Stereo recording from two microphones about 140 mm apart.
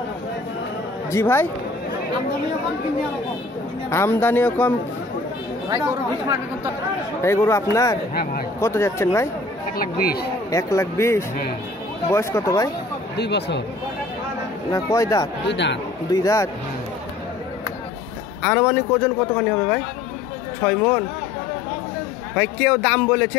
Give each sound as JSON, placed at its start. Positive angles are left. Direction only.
{"t": 1.1, "sound": "speech", "side_deg": 15}
{"t": 3.9, "sound": "speech", "side_deg": 15}
{"t": 7.2, "sound": "speech", "side_deg": 20}
{"t": 8.1, "sound": "speech", "side_deg": 90}
{"t": 8.5, "sound": "speech", "side_deg": 20}
{"t": 9.8, "sound": "speech", "side_deg": 90}
{"t": 10.5, "sound": "speech", "side_deg": 20}
{"t": 14.7, "sound": "speech", "side_deg": 20}
{"t": 18.4, "sound": "speech", "side_deg": 15}
{"t": 22.3, "sound": "speech", "side_deg": 10}